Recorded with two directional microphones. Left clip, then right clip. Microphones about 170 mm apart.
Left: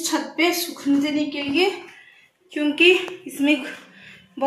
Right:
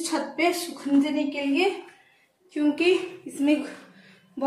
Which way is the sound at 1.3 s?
Centre (ahead or behind).